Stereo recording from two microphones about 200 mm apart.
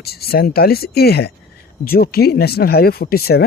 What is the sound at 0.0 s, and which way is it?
Speech, 50° left (ahead or behind).